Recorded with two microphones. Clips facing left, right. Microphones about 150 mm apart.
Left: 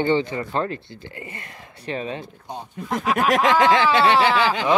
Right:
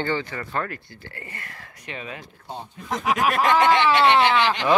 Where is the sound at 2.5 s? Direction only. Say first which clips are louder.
Left 2 dB; 10° left (ahead or behind).